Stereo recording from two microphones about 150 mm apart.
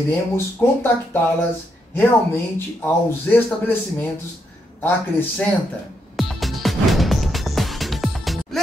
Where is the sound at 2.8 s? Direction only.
15° left (ahead or behind).